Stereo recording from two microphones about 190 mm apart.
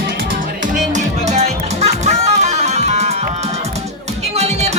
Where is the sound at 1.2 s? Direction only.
35° right (ahead or behind).